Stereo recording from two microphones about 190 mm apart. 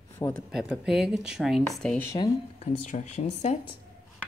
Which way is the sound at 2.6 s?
40° left (ahead or behind).